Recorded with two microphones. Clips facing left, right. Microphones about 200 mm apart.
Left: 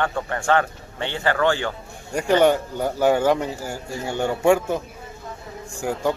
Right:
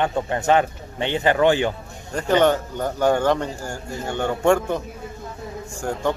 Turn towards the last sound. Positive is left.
turn(degrees=10)  # may be behind; listen again after turning